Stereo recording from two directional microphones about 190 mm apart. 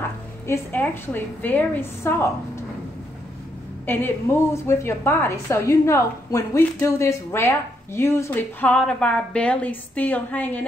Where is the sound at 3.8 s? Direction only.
10° left (ahead or behind).